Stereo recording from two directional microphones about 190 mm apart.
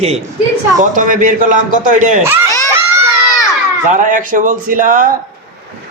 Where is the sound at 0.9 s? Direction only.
45° right (ahead or behind).